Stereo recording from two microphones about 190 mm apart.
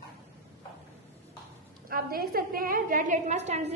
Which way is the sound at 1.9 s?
50° right (ahead or behind).